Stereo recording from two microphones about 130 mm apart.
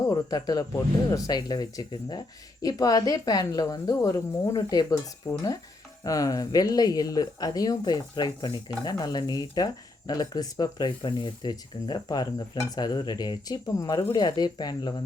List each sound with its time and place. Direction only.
0.1 s speech: 30° left (ahead or behind)